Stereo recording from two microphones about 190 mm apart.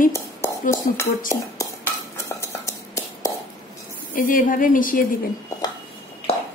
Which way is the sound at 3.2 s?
15° left (ahead or behind).